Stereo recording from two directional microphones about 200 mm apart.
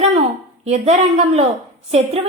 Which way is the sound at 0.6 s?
35° right (ahead or behind).